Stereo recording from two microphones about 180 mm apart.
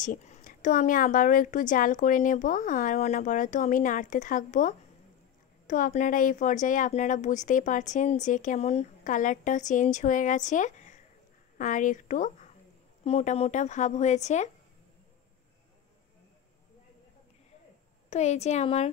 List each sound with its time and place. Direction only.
0.0 s a woman's voice: 45° left (ahead or behind)
18.1 s a woman's voice: 40° left (ahead or behind)